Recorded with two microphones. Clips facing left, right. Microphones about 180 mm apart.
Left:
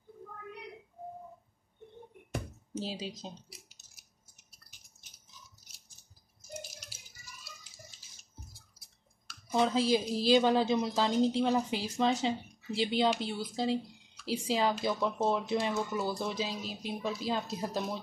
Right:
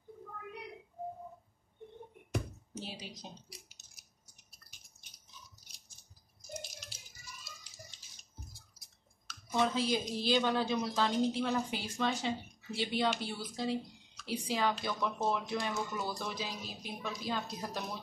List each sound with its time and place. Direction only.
2.7 s speech: 25° left (ahead or behind)
3.8 s a sound: 5° left (ahead or behind)
9.5 s speech: 30° left (ahead or behind)